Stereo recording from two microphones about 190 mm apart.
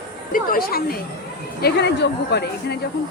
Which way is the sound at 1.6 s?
60° left (ahead or behind).